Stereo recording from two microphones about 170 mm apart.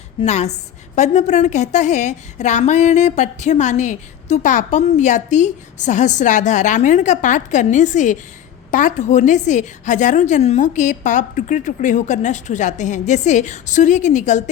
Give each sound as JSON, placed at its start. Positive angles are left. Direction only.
{"t": 0.2, "sound": "a woman's voice", "side_deg": 40}